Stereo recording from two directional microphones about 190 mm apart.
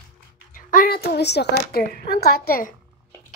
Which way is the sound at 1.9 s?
50° left (ahead or behind).